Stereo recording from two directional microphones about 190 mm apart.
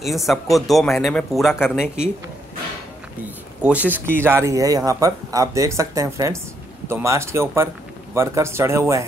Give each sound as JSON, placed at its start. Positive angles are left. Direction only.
{"t": 0.0, "sound": "speech", "side_deg": 0}
{"t": 3.6, "sound": "speech", "side_deg": -10}